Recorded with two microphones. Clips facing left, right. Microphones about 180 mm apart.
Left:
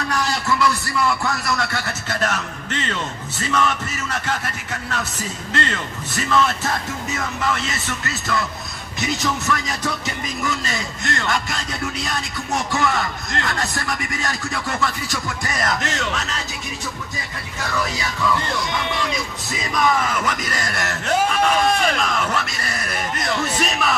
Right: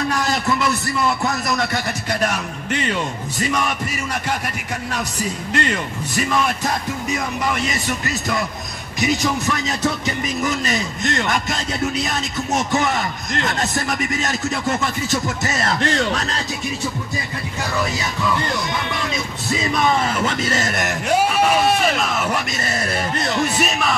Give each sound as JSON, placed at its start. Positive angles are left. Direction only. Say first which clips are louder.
{"t": 0.3, "sound": "a man's voice", "louder": "right 1 dB", "side_deg": -20}
{"t": 5.5, "sound": "speech", "louder": "right 2 dB", "side_deg": -15}
{"t": 19.5, "sound": "speech", "louder": "right 2 dB", "side_deg": -25}
{"t": 22.6, "sound": "speech", "louder": "right 4 dB", "side_deg": -25}
{"t": 23.4, "sound": "speech", "louder": "right 1 dB", "side_deg": -10}